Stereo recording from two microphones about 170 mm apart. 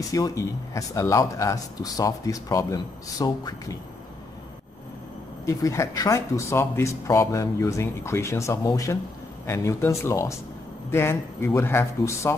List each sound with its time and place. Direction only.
0.1 s speech: 20° left (ahead or behind)
5.4 s speech: 20° left (ahead or behind)